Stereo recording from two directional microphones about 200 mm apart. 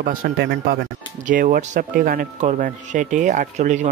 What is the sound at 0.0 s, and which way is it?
Speech, 45° right (ahead or behind).